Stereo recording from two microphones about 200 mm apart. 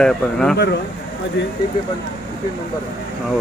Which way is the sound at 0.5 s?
55° left (ahead or behind).